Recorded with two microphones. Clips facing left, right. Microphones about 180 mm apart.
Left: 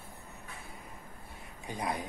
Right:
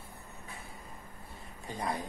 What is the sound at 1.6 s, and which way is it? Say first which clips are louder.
Speech: even; 15° left (ahead or behind).